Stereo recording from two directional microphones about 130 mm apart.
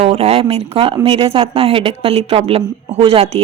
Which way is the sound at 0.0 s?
50° right (ahead or behind).